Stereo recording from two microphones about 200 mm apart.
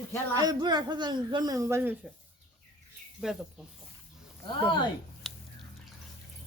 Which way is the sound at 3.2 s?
Centre (ahead or behind).